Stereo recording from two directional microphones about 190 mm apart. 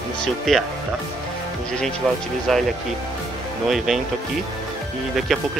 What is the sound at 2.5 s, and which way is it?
Speech, centre (ahead or behind).